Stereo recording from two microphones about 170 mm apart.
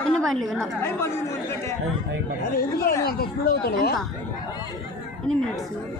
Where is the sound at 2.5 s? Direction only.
65° left (ahead or behind).